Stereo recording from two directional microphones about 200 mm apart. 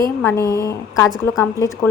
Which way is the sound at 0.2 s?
15° left (ahead or behind).